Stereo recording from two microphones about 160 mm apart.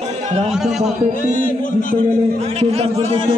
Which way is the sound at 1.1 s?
55° left (ahead or behind).